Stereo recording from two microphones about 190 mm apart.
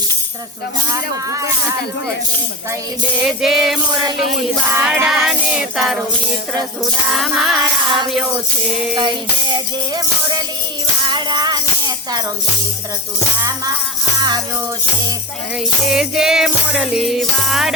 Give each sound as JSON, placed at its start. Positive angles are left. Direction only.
{"t": 0.9, "sound": "speech", "side_deg": -20}
{"t": 3.2, "sound": "music", "side_deg": 0}
{"t": 7.1, "sound": "music", "side_deg": 0}
{"t": 9.0, "sound": "music", "side_deg": -25}
{"t": 14.2, "sound": "music", "side_deg": -20}
{"t": 15.9, "sound": "music", "side_deg": -5}